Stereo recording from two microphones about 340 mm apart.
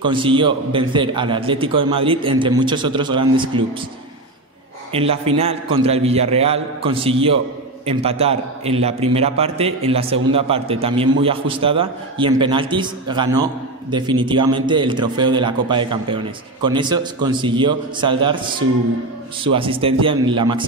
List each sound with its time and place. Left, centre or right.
0.0 s a man's voice: centre
4.9 s a man's voice: centre
19.4 s a man's voice: centre